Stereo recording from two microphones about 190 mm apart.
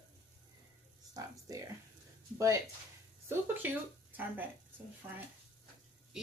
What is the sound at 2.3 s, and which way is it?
Speech, 20° right (ahead or behind).